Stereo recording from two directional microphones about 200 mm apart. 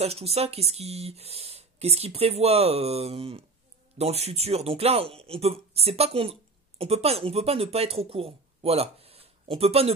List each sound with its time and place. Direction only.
0.0 s speech: 30° right (ahead or behind)